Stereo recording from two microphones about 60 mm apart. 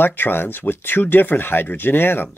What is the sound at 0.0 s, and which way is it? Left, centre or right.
Speech, left.